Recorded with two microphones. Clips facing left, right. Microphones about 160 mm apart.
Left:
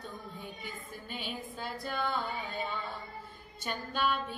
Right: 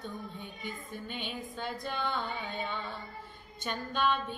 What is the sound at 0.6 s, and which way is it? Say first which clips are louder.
Female singing: right 3 dB; 5° left (ahead or behind).